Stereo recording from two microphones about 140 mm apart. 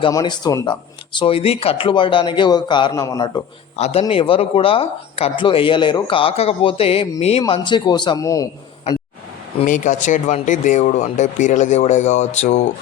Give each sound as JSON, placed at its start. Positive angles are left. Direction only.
{"t": 0.1, "sound": "speech", "side_deg": 25}
{"t": 3.8, "sound": "a man's voice", "side_deg": 50}
{"t": 7.4, "sound": "speech", "side_deg": 35}
{"t": 9.6, "sound": "speech", "side_deg": 65}